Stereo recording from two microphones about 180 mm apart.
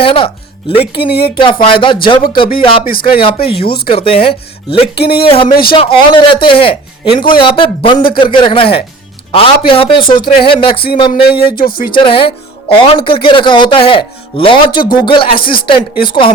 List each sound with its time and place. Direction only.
0.0 s speech: 30° left (ahead or behind)
2.8 s speech: 55° left (ahead or behind)
3.2 s speech: 30° left (ahead or behind)
7.9 s speech: 55° left (ahead or behind)
8.2 s speech: 25° left (ahead or behind)
11.1 s speech: 60° left (ahead or behind)
11.9 s speech: 30° left (ahead or behind)